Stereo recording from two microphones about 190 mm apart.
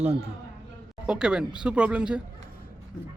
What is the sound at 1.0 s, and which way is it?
Speech, 5° right (ahead or behind).